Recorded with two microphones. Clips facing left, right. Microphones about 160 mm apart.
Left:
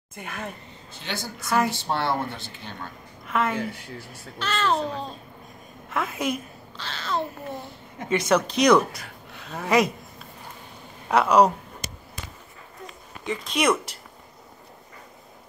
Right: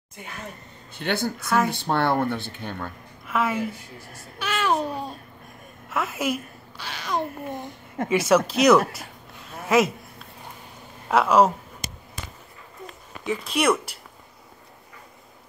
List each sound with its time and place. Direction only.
0.1 s speech: 55° left (ahead or behind)
0.9 s a woman's voice: 60° right (ahead or behind)
3.3 s a woman's voice: 5° right (ahead or behind)
11.1 s speech: centre (ahead or behind)
13.2 s speech: 5° right (ahead or behind)